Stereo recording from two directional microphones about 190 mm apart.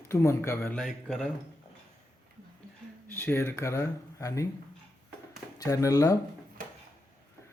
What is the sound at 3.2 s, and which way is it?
Speech, 10° left (ahead or behind).